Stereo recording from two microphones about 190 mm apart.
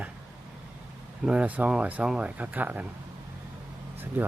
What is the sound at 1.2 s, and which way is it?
Speech, 5° right (ahead or behind).